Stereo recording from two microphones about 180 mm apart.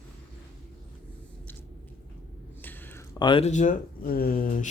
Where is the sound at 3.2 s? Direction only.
25° left (ahead or behind).